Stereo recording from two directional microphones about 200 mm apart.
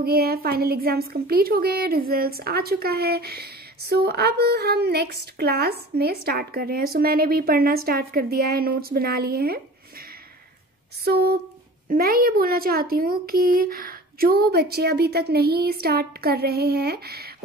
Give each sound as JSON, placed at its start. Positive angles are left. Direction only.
{"t": 0.0, "sound": "a woman's voice", "side_deg": -50}
{"t": 11.1, "sound": "a woman's voice", "side_deg": -55}